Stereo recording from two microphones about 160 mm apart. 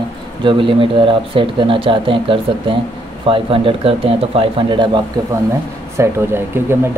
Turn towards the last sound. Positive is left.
turn(degrees=-15)  # may be behind; listen again after turning